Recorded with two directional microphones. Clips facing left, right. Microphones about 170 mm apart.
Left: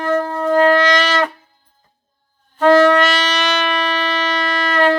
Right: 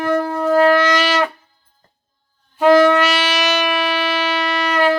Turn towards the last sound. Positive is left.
turn(degrees=-10)  # may be behind; listen again after turning